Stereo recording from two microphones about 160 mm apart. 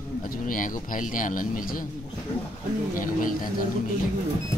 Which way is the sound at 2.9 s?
60° left (ahead or behind).